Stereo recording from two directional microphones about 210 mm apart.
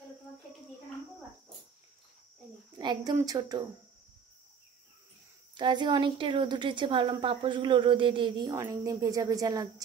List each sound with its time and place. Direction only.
2.8 s speech: 20° right (ahead or behind)
5.6 s a woman's voice: 20° right (ahead or behind)